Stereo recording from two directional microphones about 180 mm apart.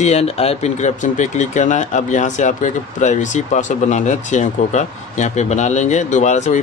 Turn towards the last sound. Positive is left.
turn(degrees=40)  # may be behind; listen again after turning